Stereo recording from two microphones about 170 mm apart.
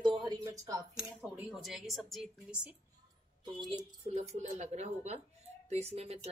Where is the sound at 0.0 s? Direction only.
25° right (ahead or behind).